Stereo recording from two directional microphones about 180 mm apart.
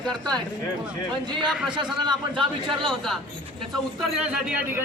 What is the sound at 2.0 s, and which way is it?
Speech, 25° right (ahead or behind).